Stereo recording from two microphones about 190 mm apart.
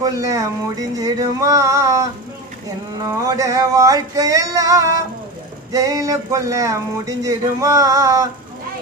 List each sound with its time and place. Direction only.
0.0 s speech: 15° right (ahead or behind)
3.1 s speech: 15° right (ahead or behind)